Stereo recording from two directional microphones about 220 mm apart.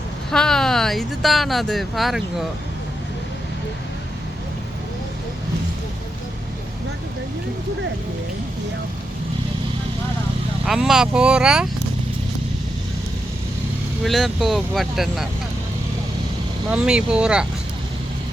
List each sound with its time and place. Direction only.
0.3 s speech: 5° left (ahead or behind)
10.7 s speech: centre (ahead or behind)
14.0 s speech: centre (ahead or behind)
16.6 s speech: 5° right (ahead or behind)